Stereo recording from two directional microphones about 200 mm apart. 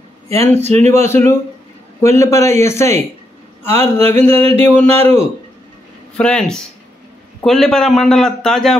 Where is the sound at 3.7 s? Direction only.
30° right (ahead or behind).